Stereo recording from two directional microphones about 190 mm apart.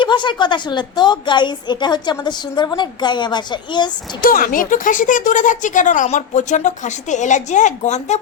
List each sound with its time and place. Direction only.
0.0 s a woman's voice: 25° left (ahead or behind)
4.2 s speech: 50° left (ahead or behind)